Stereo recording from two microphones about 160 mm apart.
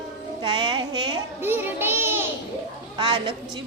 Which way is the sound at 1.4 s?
15° right (ahead or behind).